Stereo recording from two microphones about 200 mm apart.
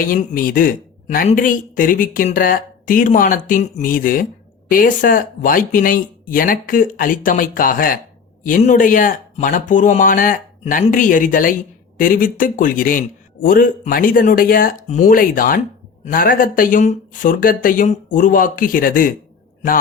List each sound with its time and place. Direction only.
0.1 s speech: 45° left (ahead or behind)